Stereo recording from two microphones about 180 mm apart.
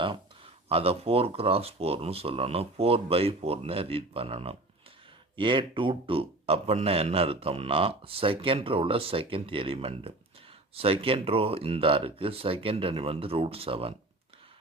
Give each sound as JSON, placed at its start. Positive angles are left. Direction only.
{"t": 0.7, "sound": "speech", "side_deg": -35}